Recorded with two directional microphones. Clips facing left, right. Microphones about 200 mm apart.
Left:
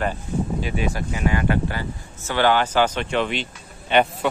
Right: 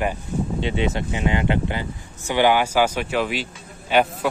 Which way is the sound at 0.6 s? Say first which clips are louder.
Right 2 dB; 25° right (ahead or behind).